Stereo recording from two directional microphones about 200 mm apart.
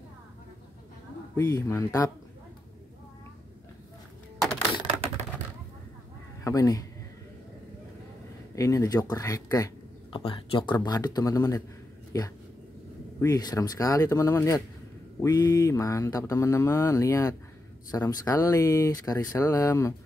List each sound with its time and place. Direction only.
1.3 s mantra: 15° left (ahead or behind)
6.4 s mantra: 15° left (ahead or behind)
8.5 s mantra: 15° left (ahead or behind)
10.1 s speech: 25° left (ahead or behind)
12.1 s mantra: 15° left (ahead or behind)